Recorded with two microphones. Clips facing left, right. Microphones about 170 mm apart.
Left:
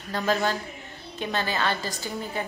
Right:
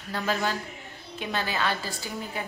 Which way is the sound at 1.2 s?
5° right (ahead or behind).